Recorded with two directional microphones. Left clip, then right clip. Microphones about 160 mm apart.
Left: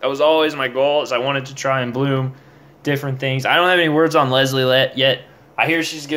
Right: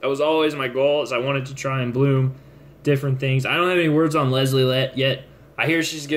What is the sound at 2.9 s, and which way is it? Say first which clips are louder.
Speech: left 1 dB; 20° right (ahead or behind).